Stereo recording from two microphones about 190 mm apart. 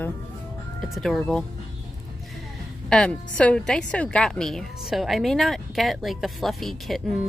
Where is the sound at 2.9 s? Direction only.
5° left (ahead or behind).